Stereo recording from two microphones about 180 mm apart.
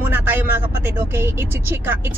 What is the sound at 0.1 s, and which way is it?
Speech, 10° right (ahead or behind).